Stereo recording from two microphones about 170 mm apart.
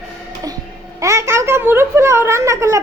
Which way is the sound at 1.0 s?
15° right (ahead or behind).